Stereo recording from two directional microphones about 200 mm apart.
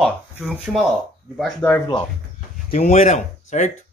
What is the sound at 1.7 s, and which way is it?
Speech, 20° left (ahead or behind).